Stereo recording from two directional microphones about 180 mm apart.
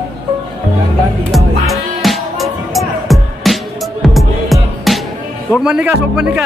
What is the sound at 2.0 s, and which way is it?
Music, centre (ahead or behind).